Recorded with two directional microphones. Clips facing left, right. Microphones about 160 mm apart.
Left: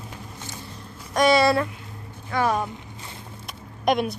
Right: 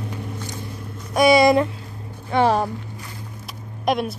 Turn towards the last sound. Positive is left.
turn(degrees=0)  # may be behind; listen again after turning